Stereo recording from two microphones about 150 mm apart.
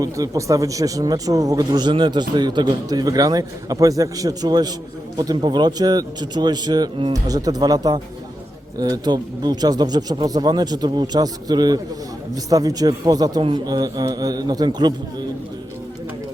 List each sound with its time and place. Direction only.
0.0 s a man's voice: 20° right (ahead or behind)